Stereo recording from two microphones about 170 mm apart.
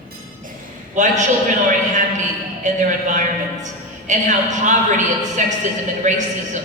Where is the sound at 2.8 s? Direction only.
45° right (ahead or behind).